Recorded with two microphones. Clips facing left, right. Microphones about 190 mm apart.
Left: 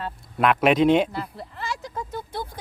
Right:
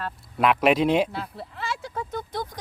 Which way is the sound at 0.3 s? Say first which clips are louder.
Left 1 dB; centre (ahead or behind).